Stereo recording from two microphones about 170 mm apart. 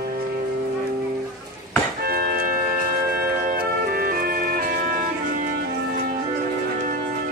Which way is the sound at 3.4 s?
60° right (ahead or behind).